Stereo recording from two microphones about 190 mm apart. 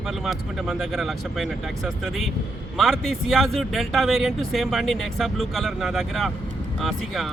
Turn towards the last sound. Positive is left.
turn(degrees=0)  # may be behind; listen again after turning